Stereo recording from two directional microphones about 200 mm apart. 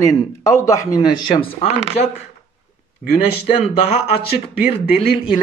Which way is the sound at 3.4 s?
30° left (ahead or behind).